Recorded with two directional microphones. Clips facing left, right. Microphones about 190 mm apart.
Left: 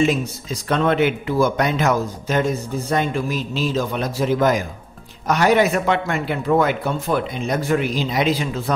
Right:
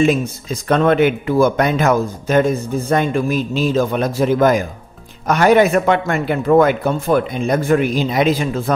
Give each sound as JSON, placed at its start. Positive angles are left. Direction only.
{"t": 0.0, "sound": "speech", "side_deg": -55}